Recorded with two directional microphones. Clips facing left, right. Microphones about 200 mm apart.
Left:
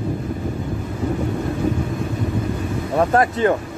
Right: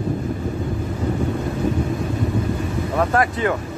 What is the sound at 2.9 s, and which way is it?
Speech, 25° left (ahead or behind).